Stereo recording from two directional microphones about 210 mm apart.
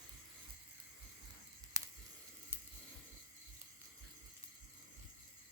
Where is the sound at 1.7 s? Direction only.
15° right (ahead or behind).